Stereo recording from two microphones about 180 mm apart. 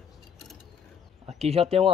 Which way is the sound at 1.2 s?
35° right (ahead or behind).